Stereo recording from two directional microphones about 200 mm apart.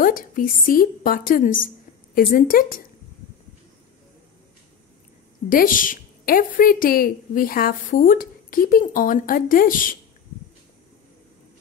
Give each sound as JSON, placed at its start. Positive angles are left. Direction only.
{"t": 0.0, "sound": "a woman's voice", "side_deg": 45}
{"t": 5.5, "sound": "a woman's voice", "side_deg": 45}